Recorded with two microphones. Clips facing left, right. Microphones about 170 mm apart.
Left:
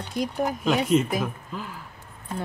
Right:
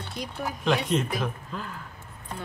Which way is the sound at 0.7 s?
5° left (ahead or behind).